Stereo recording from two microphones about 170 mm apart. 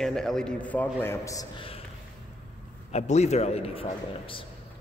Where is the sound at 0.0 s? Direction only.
5° left (ahead or behind); by 1.5 s 20° left (ahead or behind).